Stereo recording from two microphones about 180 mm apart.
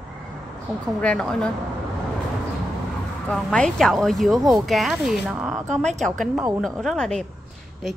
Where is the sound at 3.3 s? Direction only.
5° left (ahead or behind).